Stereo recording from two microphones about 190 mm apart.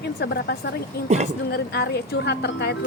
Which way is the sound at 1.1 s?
35° right (ahead or behind).